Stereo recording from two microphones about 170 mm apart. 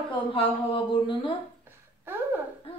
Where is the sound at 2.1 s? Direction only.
10° right (ahead or behind).